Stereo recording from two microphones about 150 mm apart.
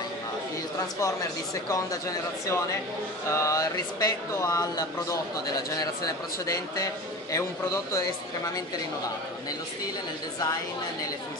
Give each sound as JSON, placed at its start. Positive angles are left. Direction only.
{"t": 0.7, "sound": "speech", "side_deg": 20}